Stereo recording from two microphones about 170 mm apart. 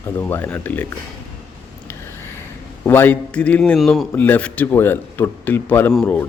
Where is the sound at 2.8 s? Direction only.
15° left (ahead or behind).